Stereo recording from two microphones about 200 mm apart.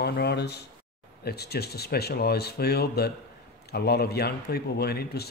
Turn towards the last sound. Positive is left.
turn(degrees=50)  # may be behind; listen again after turning